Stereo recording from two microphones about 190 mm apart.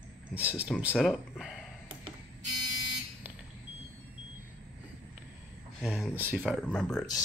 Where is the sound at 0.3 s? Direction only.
10° right (ahead or behind).